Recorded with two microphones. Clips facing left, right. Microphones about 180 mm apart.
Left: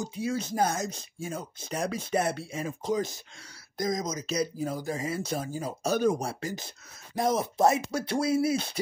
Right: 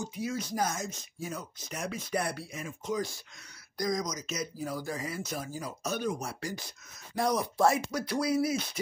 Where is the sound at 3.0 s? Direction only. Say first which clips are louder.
Left 3 dB; 20° left (ahead or behind).